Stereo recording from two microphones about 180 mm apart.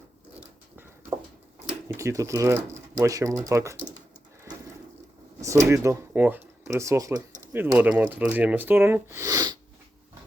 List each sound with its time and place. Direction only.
2.0 s speech: 15° right (ahead or behind)
3.8 s a sound: 45° right (ahead or behind)
5.4 s speech: 15° right (ahead or behind)